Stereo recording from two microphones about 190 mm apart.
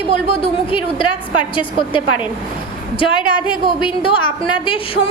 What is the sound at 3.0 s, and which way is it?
A woman's voice, 25° left (ahead or behind).